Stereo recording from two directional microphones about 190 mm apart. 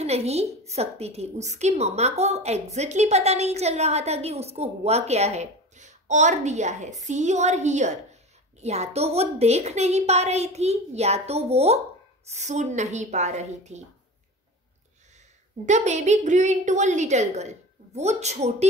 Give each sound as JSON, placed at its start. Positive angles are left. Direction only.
{"t": 0.0, "sound": "a woman's voice", "side_deg": -35}
{"t": 15.6, "sound": "a woman's voice", "side_deg": -40}